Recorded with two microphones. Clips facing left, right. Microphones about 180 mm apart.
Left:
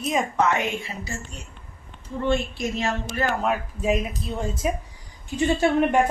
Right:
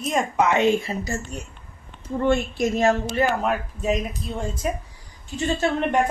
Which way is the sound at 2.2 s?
50° right (ahead or behind).